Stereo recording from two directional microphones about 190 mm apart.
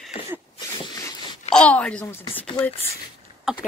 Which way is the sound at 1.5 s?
5° left (ahead or behind).